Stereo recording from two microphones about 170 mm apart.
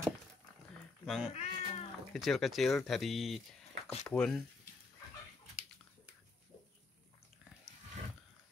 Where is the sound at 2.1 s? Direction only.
Centre (ahead or behind).